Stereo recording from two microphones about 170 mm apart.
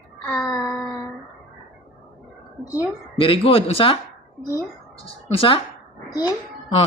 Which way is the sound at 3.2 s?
35° left (ahead or behind).